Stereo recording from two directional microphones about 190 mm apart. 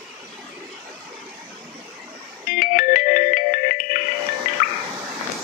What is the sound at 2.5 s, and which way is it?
Music, 45° left (ahead or behind).